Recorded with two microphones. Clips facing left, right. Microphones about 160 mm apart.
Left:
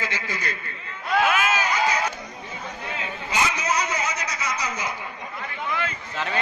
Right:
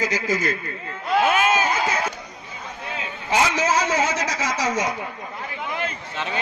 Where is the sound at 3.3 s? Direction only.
90° right.